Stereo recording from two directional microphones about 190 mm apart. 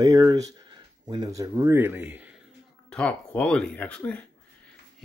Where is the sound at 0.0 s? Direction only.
20° right (ahead or behind).